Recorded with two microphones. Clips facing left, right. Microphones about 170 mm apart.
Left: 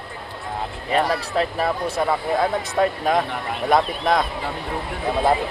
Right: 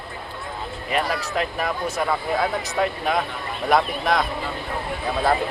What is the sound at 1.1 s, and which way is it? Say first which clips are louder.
Speech: left 3 dB; 35° left (ahead or behind).